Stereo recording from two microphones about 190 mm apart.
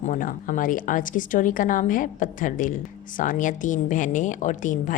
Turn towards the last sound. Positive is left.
turn(degrees=40)  # may be behind; listen again after turning